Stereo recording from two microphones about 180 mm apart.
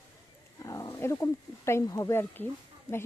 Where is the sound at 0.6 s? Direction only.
20° left (ahead or behind).